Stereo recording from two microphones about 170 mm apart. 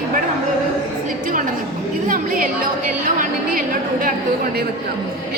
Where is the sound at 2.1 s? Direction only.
50° right (ahead or behind).